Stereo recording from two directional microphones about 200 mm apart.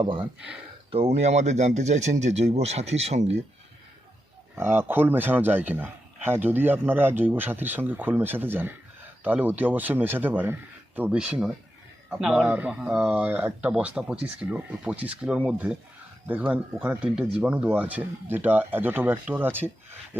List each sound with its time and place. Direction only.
0.0 s speech: 25° right (ahead or behind)
4.5 s a man's voice: 10° right (ahead or behind)